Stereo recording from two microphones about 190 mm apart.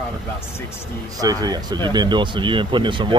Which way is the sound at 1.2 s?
20° right (ahead or behind).